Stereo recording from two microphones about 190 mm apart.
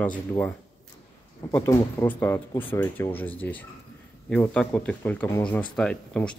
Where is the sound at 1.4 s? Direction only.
15° left (ahead or behind).